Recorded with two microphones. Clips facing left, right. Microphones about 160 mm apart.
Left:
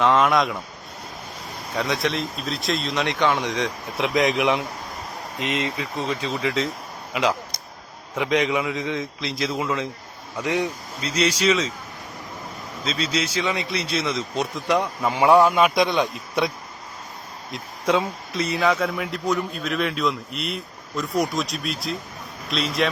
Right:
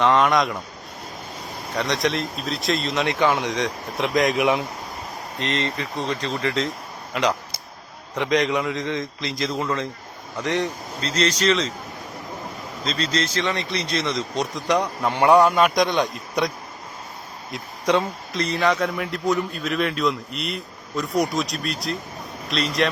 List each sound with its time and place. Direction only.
0.0 s a man's voice: centre (ahead or behind)
1.7 s a man's voice: centre (ahead or behind)
12.8 s a man's voice: 5° left (ahead or behind)
17.5 s a man's voice: centre (ahead or behind)